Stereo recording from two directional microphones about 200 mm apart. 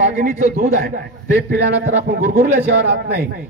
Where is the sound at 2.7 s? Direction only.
60° right (ahead or behind).